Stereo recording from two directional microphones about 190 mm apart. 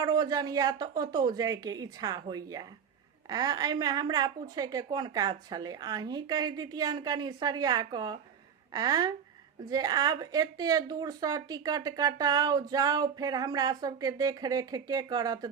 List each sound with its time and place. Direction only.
0.0 s speech: 20° right (ahead or behind)